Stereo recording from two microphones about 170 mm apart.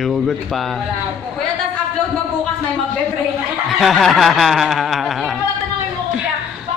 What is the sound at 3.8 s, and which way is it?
Speech, centre (ahead or behind).